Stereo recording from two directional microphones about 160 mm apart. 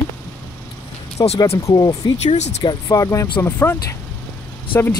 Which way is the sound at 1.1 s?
40° left (ahead or behind).